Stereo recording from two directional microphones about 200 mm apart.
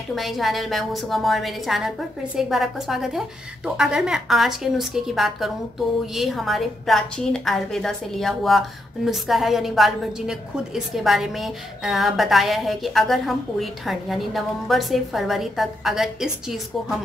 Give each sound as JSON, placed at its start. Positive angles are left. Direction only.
{"t": 0.1, "sound": "a woman's voice", "side_deg": 0}